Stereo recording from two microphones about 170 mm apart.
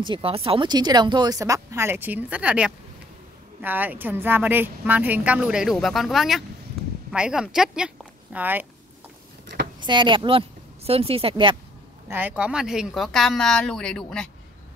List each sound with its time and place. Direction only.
0.0 s a woman's voice: 30° right (ahead or behind); by 8.6 s 10° right (ahead or behind)
9.8 s speech: 25° right (ahead or behind)
12.1 s speech: 10° right (ahead or behind)